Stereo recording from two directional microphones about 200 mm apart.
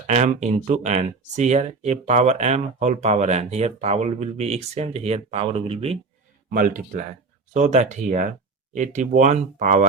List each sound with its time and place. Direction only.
0.1 s speech: 35° right (ahead or behind)
6.5 s speech: 45° right (ahead or behind)